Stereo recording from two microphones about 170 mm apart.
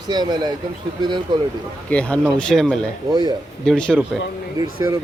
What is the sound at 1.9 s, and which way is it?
Speech, 5° left (ahead or behind).